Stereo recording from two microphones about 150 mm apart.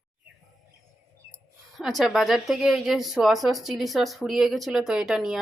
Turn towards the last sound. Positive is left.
turn(degrees=-5)  # may be behind; listen again after turning